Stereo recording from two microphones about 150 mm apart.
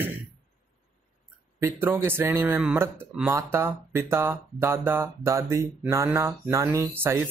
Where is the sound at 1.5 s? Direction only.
15° right (ahead or behind).